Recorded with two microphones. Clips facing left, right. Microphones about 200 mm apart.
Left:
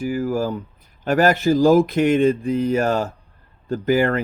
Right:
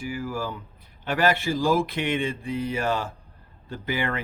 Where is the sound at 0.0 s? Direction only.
40° left (ahead or behind).